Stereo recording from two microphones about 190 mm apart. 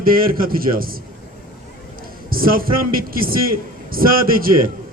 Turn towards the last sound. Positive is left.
turn(degrees=-50)  # may be behind; listen again after turning